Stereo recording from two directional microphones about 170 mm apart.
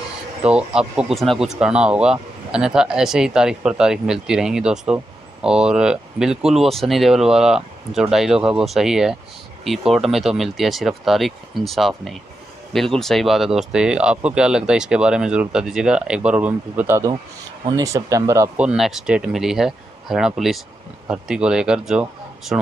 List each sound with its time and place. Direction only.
0.4 s speech: 5° right (ahead or behind)
18.7 s speech: 5° right (ahead or behind)